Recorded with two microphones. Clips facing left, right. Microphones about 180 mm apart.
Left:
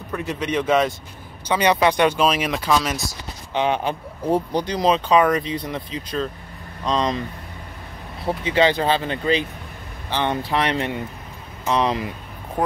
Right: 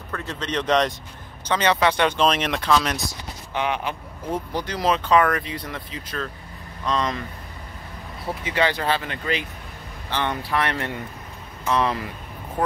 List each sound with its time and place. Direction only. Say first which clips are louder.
0.1 s speech: left 4 dB; 15° left (ahead or behind)
3.5 s speech: left 4 dB; 30° left (ahead or behind)
4.5 s speech: left 4 dB; 20° left (ahead or behind)
8.5 s speech: left 4 dB; 25° left (ahead or behind)